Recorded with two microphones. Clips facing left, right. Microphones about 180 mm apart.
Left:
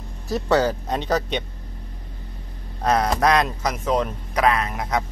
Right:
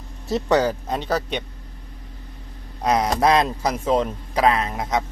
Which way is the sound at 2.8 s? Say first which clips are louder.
Even; 15° right (ahead or behind).